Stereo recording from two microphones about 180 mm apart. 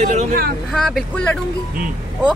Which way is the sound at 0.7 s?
Centre (ahead or behind).